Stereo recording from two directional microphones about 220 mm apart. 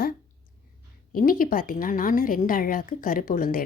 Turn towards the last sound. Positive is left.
turn(degrees=40)  # may be behind; listen again after turning